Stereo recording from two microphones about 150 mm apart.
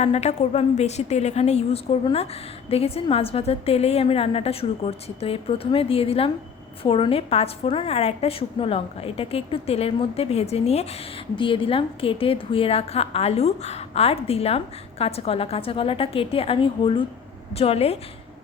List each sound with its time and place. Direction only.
0.0 s a woman's voice: 45° left (ahead or behind)